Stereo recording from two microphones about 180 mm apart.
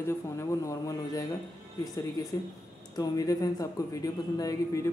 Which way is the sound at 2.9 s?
20° left (ahead or behind).